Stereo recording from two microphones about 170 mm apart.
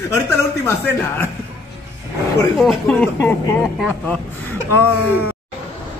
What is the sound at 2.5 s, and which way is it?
Speech, centre (ahead or behind).